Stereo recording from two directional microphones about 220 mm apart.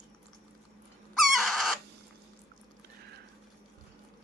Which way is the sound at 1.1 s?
Centre (ahead or behind).